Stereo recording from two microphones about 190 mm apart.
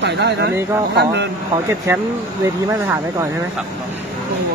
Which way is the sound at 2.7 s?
15° right (ahead or behind).